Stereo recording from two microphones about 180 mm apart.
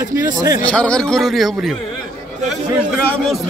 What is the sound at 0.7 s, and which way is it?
A man's voice, 5° left (ahead or behind).